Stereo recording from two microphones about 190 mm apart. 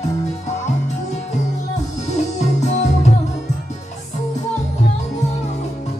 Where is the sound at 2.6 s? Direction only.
35° left (ahead or behind).